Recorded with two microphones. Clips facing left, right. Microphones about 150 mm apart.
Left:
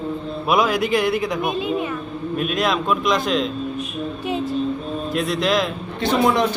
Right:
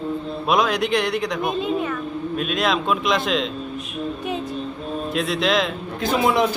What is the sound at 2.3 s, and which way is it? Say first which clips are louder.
A man's voice: left 1 dB; centre (ahead or behind).